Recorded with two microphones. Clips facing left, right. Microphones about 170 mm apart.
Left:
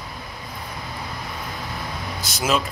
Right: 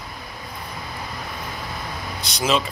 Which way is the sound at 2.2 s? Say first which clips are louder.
Right 1 dB; 5° left (ahead or behind).